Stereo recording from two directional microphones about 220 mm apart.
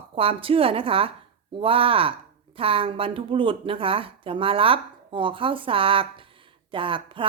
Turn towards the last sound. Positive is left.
turn(degrees=-25)  # may be behind; listen again after turning